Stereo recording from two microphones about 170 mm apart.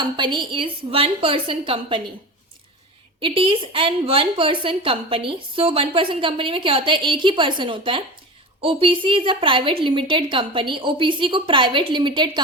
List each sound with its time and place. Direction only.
0.2 s a woman's voice: 25° right (ahead or behind)
3.2 s a woman's voice: 30° right (ahead or behind)